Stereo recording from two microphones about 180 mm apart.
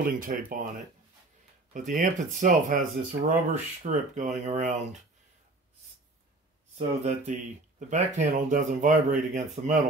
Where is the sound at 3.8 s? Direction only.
45° right (ahead or behind).